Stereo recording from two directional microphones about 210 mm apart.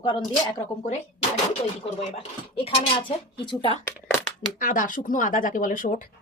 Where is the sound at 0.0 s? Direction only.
20° left (ahead or behind).